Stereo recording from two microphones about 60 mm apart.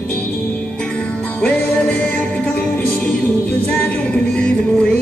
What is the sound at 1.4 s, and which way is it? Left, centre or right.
Music, centre.